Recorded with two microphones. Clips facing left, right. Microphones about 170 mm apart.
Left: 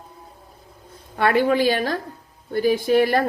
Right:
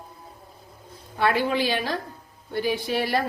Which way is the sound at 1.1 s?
55° left (ahead or behind).